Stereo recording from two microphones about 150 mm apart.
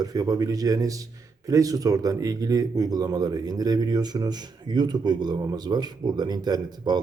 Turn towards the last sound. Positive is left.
turn(degrees=-30)  # may be behind; listen again after turning